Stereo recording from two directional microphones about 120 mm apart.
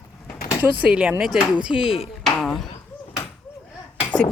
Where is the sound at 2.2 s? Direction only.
Centre (ahead or behind).